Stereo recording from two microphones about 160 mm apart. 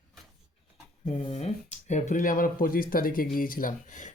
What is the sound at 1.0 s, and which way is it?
Speech, 40° left (ahead or behind).